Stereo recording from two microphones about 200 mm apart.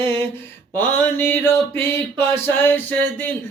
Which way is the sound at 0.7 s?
10° left (ahead or behind).